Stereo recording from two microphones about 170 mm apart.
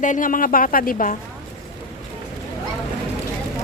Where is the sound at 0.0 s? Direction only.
50° left (ahead or behind).